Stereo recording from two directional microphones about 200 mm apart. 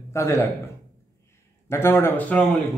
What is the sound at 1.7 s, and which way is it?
Speech, 10° left (ahead or behind).